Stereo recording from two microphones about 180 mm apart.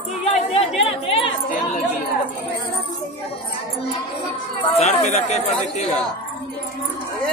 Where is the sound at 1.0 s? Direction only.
30° left (ahead or behind).